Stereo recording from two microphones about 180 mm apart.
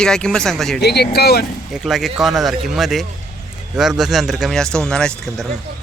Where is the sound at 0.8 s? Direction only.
65° left (ahead or behind).